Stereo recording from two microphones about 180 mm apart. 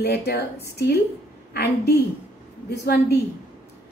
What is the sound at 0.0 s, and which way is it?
A woman's voice, 65° left (ahead or behind).